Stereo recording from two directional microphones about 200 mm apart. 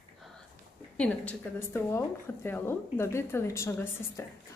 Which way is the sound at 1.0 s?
10° left (ahead or behind).